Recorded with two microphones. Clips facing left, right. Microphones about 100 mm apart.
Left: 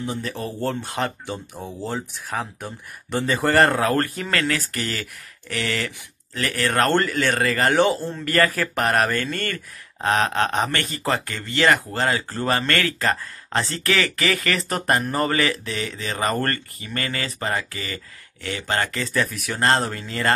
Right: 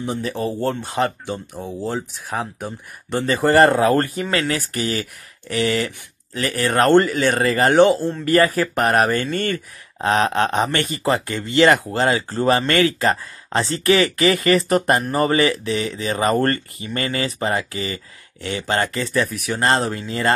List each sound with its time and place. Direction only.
0.0 s speech: 5° right (ahead or behind)
7.7 s speech: centre (ahead or behind)
10.1 s speech: 20° right (ahead or behind)
11.9 s speech: 20° right (ahead or behind)
18.9 s speech: centre (ahead or behind)